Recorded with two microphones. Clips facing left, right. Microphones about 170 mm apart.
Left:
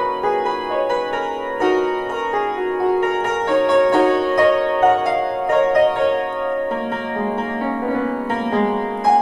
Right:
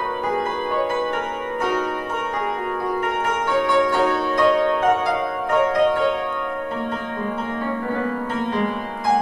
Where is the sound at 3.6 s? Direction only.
60° left (ahead or behind).